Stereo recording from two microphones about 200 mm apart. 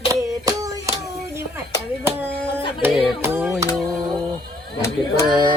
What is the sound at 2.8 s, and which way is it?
Hands, 5° right (ahead or behind).